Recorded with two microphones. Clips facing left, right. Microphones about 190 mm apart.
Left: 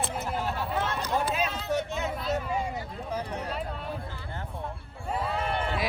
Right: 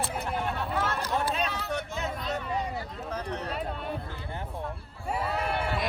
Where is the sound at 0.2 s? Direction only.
5° left (ahead or behind).